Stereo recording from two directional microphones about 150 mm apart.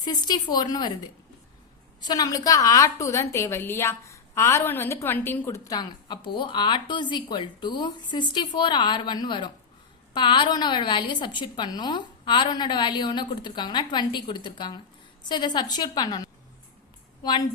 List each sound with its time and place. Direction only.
0.0 s a woman's voice: 30° left (ahead or behind)
2.0 s a woman's voice: 25° left (ahead or behind)